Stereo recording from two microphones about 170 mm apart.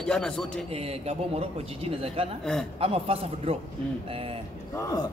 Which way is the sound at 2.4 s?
5° left (ahead or behind).